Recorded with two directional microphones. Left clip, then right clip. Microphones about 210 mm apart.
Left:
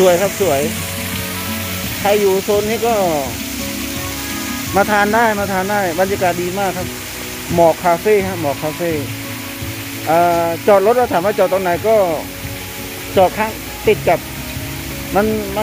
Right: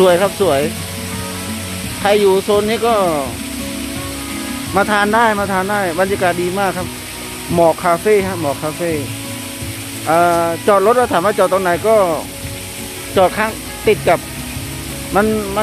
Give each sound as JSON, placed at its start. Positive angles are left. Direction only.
{"t": 0.0, "sound": "speech", "side_deg": -15}
{"t": 2.0, "sound": "speech", "side_deg": -20}
{"t": 4.7, "sound": "speech", "side_deg": -5}
{"t": 10.0, "sound": "speech", "side_deg": -10}